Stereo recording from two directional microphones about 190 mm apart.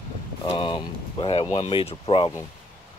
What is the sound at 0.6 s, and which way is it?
Speech, 25° left (ahead or behind).